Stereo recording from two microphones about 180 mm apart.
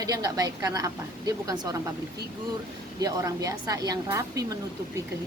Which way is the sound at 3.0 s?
20° right (ahead or behind).